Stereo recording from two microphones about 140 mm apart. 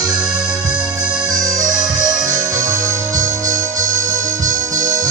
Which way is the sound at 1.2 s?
25° right (ahead or behind).